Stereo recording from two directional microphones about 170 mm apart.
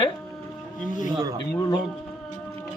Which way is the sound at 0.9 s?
50° left (ahead or behind).